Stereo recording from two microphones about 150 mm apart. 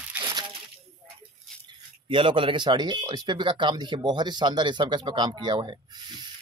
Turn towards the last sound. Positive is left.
turn(degrees=-30)  # may be behind; listen again after turning